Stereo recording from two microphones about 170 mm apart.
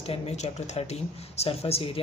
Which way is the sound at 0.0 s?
35° left (ahead or behind).